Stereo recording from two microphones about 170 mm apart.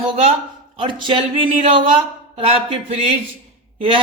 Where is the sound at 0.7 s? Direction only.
30° right (ahead or behind).